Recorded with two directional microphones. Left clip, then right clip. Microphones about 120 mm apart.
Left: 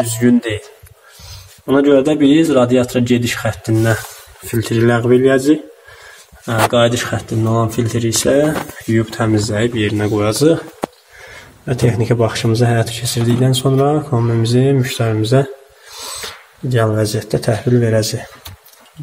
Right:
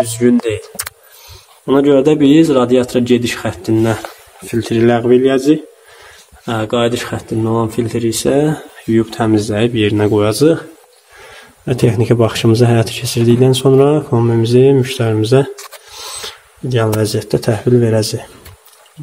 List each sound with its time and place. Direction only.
0.2 s speech: 20° right (ahead or behind)
1.7 s speech: 30° right (ahead or behind); by 7.7 s 10° right (ahead or behind)
7.7 s speech: 20° right (ahead or behind)
11.6 s a man's voice: 35° right (ahead or behind); by 15.4 s 20° right (ahead or behind)
16.0 s speech: 5° right (ahead or behind)